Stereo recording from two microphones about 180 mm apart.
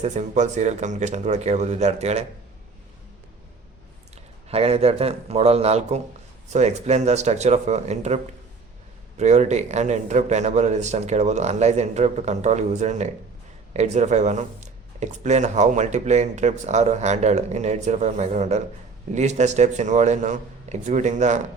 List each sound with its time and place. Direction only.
0.0 s speech: 40° right (ahead or behind)
4.4 s speech: 35° right (ahead or behind)